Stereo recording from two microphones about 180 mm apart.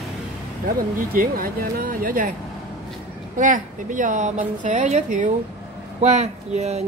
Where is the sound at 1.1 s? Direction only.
55° right (ahead or behind).